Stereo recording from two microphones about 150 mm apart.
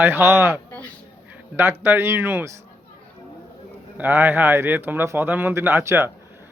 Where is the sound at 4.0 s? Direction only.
15° right (ahead or behind).